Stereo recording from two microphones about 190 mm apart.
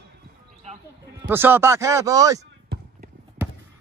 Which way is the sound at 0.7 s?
35° right (ahead or behind).